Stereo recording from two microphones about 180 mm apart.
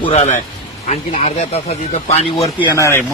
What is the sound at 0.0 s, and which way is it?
Speech, 35° left (ahead or behind).